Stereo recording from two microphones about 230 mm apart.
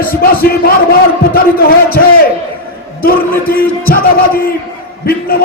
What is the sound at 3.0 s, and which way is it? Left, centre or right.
A man's voice, left.